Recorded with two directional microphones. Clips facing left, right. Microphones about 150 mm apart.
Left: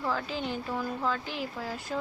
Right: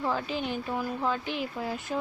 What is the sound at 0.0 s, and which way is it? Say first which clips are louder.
Speech: right 2 dB; 20° right (ahead or behind).